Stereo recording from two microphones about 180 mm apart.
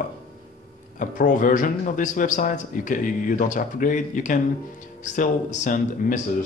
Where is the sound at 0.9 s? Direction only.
45° left (ahead or behind).